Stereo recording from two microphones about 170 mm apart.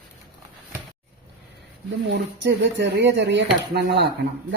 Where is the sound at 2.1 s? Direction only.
90° right.